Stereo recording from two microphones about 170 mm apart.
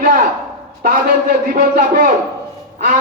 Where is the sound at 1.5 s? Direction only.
50° right (ahead or behind).